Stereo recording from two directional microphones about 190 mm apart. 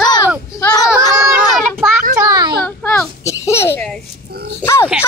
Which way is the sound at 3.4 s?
15° left (ahead or behind).